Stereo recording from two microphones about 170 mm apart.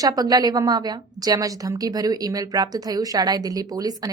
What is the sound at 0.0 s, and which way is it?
A woman's voice, 20° right (ahead or behind).